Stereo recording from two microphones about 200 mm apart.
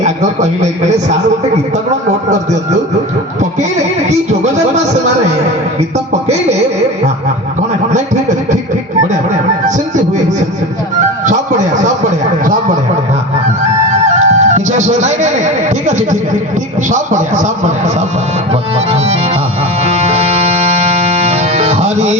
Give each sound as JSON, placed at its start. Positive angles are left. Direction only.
{"t": 0.0, "sound": "speech", "side_deg": -35}
{"t": 13.9, "sound": "music", "side_deg": -35}
{"t": 16.9, "sound": "a sound", "side_deg": -40}
{"t": 19.8, "sound": "music", "side_deg": -35}